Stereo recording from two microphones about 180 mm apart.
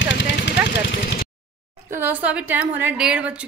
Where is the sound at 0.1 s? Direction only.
70° left (ahead or behind).